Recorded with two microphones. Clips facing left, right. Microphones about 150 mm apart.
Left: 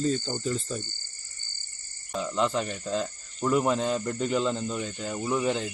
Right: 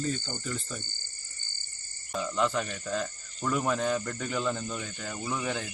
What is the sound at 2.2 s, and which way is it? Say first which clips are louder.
Speech: left 2 dB; 20° left (ahead or behind).